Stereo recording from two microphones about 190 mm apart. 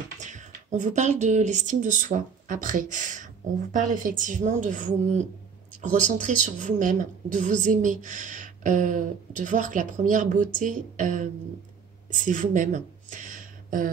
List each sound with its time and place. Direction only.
0.2 s a woman's voice: 40° right (ahead or behind)